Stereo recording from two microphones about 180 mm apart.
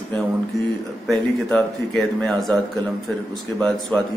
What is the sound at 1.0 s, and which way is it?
Speech, centre (ahead or behind).